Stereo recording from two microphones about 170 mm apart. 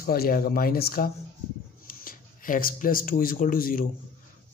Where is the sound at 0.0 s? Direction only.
60° left (ahead or behind).